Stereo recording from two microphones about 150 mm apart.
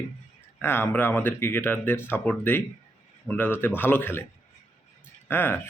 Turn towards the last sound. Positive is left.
turn(degrees=10)  # may be behind; listen again after turning